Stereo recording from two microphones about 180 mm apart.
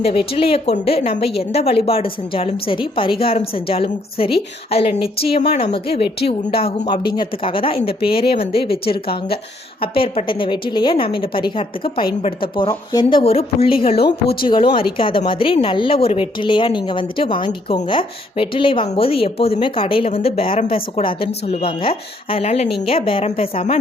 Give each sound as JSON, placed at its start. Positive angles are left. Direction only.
{"t": 0.0, "sound": "a woman's voice", "side_deg": 30}
{"t": 9.8, "sound": "a woman's voice", "side_deg": 30}